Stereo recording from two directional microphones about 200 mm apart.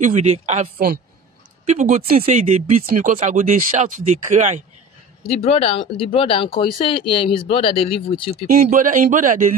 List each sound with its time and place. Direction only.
0.0 s speech: 35° right (ahead or behind)
1.7 s speech: 35° right (ahead or behind)
5.3 s speech: 30° left (ahead or behind)
8.6 s speech: 40° right (ahead or behind)